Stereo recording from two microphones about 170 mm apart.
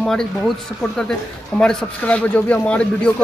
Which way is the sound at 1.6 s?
5° left (ahead or behind).